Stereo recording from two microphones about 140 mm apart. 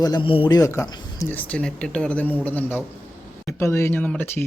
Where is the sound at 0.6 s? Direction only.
20° left (ahead or behind).